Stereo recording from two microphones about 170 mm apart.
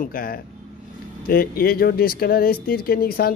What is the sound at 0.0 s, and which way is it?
Speech, 60° left (ahead or behind).